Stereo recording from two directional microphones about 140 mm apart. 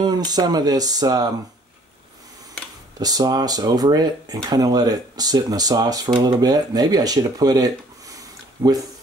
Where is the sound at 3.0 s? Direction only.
25° right (ahead or behind).